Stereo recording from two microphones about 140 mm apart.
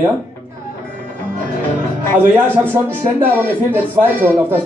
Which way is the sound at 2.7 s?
15° right (ahead or behind).